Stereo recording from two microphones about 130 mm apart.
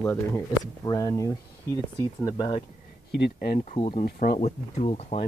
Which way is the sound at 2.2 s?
40° left (ahead or behind).